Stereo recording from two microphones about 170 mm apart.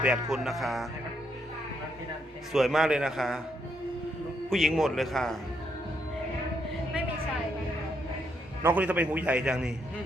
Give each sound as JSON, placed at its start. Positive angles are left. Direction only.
{"t": 0.0, "sound": "a man's voice", "side_deg": -5}
{"t": 2.5, "sound": "a man's voice", "side_deg": 0}
{"t": 4.4, "sound": "a man's voice", "side_deg": 0}
{"t": 8.6, "sound": "a man's voice", "side_deg": -10}